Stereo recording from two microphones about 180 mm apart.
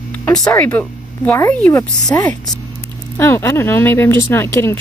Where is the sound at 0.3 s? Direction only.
20° left (ahead or behind).